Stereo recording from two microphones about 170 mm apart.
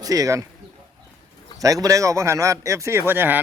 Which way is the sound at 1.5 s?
20° right (ahead or behind).